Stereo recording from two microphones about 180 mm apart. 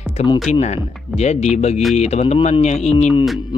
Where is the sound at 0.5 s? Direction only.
35° left (ahead or behind).